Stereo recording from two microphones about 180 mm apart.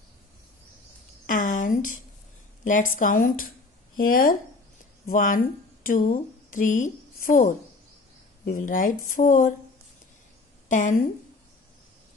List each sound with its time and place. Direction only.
1.2 s a sound: 45° left (ahead or behind)
2.6 s a woman's voice: 45° left (ahead or behind)
10.7 s a woman's voice: 45° left (ahead or behind)